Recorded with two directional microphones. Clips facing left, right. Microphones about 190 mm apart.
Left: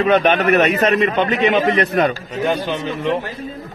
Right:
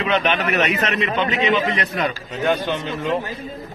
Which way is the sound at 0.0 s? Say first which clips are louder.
Left 6 dB; 45° left (ahead or behind).